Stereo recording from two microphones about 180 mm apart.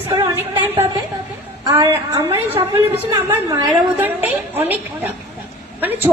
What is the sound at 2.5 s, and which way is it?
Speech, 30° right (ahead or behind).